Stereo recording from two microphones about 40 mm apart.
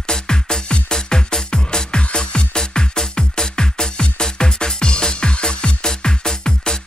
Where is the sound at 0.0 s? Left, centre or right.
Centre.